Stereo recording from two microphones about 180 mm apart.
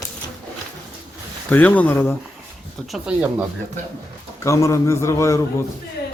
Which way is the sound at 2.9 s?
5° right (ahead or behind).